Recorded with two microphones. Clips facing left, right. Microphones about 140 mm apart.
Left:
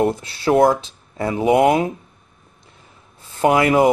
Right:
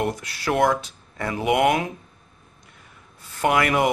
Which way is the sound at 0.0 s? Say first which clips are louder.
Left 7 dB; 25° left (ahead or behind).